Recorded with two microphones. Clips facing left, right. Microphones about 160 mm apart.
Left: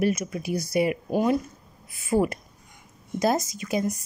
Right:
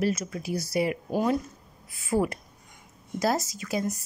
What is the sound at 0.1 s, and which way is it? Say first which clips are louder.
A woman's voice: left 3 dB; 20° left (ahead or behind).